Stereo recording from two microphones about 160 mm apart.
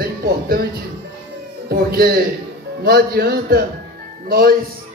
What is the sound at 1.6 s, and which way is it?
A man's voice, 70° right (ahead or behind).